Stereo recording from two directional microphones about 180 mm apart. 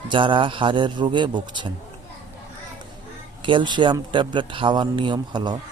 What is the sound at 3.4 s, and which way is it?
Speech, 25° right (ahead or behind).